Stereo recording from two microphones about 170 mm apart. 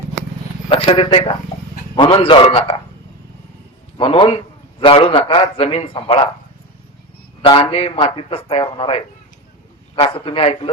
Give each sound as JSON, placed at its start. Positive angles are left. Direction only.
{"t": 0.7, "sound": "a man's voice", "side_deg": 30}
{"t": 3.9, "sound": "a man's voice", "side_deg": 30}
{"t": 7.4, "sound": "a man's voice", "side_deg": 30}